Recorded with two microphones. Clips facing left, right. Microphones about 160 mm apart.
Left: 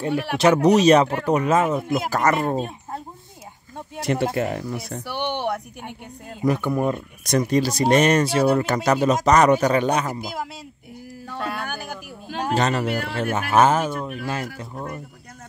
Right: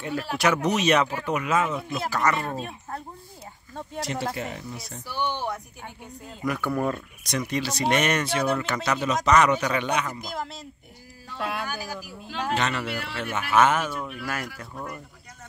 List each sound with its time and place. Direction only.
0.0 s speech: 25° left (ahead or behind)
0.4 s speech: 35° left (ahead or behind)
4.0 s speech: 55° left (ahead or behind)
6.6 s speech: 20° left (ahead or behind)
7.2 s speech: 40° left (ahead or behind)
10.2 s speech: 10° left (ahead or behind)
11.3 s speech: centre (ahead or behind)
11.6 s speech: 55° left (ahead or behind)
14.2 s speech: 25° left (ahead or behind)